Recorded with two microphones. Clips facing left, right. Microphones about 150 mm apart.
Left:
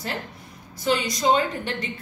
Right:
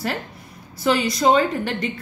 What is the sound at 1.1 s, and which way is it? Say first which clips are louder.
Speech: right 4 dB; 65° right (ahead or behind).